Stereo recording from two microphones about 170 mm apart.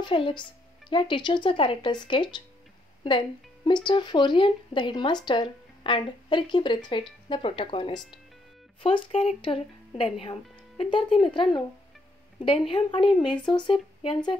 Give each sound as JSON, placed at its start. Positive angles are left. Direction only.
{"t": 0.0, "sound": "speech", "side_deg": 30}